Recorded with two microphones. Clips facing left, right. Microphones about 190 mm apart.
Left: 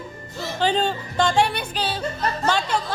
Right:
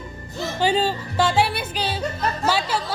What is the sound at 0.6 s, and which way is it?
Music, 5° right (ahead or behind).